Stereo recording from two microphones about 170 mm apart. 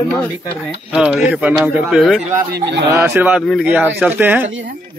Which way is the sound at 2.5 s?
85° right.